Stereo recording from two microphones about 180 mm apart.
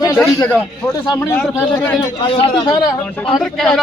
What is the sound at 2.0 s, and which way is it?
Speech, 25° left (ahead or behind).